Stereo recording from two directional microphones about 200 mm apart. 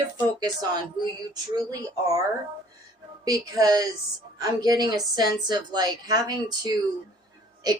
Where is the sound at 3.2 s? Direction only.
20° right (ahead or behind).